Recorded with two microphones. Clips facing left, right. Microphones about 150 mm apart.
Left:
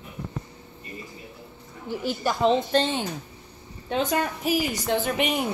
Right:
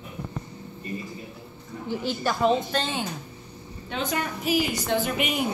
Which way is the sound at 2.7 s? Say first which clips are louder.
Left 5 dB; 30° left (ahead or behind).